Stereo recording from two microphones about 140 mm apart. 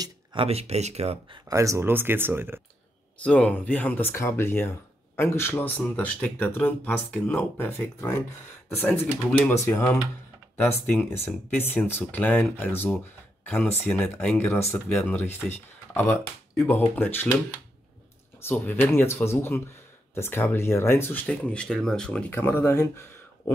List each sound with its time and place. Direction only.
0.0 s speech: 40° right (ahead or behind)
1.5 s speech: 20° right (ahead or behind)
3.2 s speech: 10° left (ahead or behind)
9.5 s speech: 15° left (ahead or behind)
18.4 s speech: 15° left (ahead or behind)